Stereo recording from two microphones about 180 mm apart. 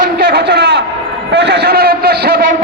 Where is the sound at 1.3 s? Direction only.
60° right (ahead or behind).